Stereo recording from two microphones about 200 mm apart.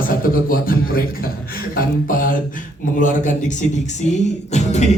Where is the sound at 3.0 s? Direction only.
40° left (ahead or behind).